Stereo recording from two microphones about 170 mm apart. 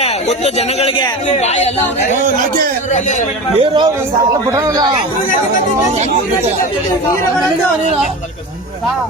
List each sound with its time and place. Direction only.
0.0 s speech: 40° left (ahead or behind)
2.1 s speech: 50° right (ahead or behind)
2.9 s a man's voice: 45° left (ahead or behind)
3.6 s a man's voice: 25° right (ahead or behind)